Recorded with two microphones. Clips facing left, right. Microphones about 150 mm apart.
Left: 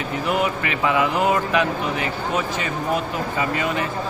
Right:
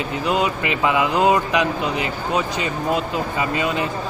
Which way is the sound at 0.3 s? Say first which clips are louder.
Right 2 dB; 20° right (ahead or behind).